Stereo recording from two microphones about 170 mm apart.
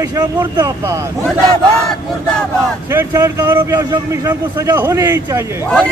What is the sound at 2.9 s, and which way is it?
A man's voice, 15° right (ahead or behind).